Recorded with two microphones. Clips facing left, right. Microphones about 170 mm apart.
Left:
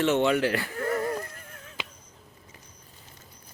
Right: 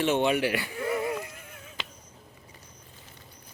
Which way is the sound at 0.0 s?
15° right (ahead or behind).